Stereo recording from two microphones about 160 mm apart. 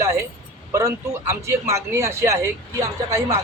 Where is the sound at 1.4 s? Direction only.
15° right (ahead or behind).